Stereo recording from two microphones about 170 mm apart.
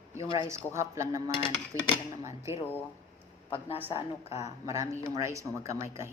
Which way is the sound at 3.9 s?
30° left (ahead or behind).